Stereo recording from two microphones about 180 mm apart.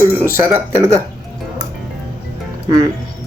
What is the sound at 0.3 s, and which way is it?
Speech, 15° right (ahead or behind).